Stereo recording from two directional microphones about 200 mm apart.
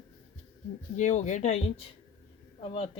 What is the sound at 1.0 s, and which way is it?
A man's voice, 35° left (ahead or behind).